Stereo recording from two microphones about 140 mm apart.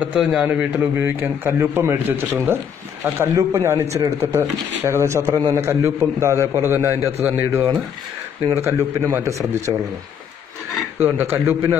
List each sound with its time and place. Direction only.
0.0 s a man's voice: 5° right (ahead or behind); by 9.8 s 20° right (ahead or behind)
11.0 s a man's voice: 15° right (ahead or behind)